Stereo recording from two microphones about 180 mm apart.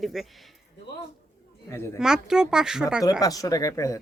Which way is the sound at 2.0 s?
5° right (ahead or behind).